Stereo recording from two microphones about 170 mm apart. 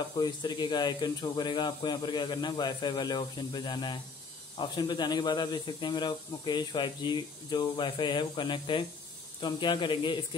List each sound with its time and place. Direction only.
0.2 s speech: 25° left (ahead or behind)